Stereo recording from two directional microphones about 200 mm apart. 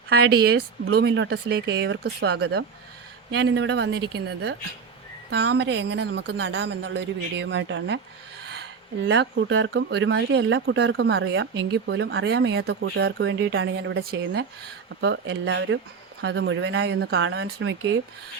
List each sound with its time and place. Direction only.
0.4 s speech: 50° right (ahead or behind)
9.0 s speech: 60° right (ahead or behind)